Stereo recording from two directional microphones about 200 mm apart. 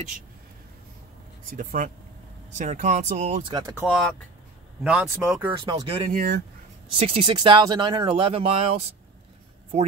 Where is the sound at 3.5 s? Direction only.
15° right (ahead or behind).